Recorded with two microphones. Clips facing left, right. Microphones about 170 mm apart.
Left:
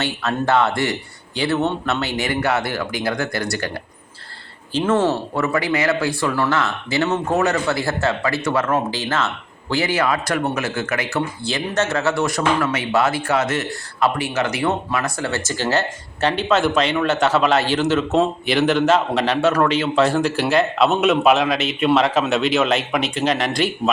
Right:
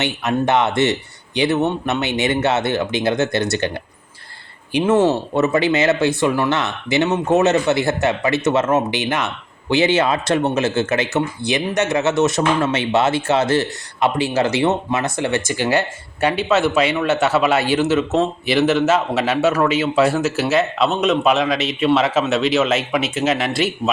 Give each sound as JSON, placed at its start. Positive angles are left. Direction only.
{"t": 0.0, "sound": "speech", "side_deg": -20}
{"t": 4.7, "sound": "a man's voice", "side_deg": -15}